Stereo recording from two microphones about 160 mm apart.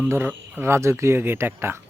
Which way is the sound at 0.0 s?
15° right (ahead or behind).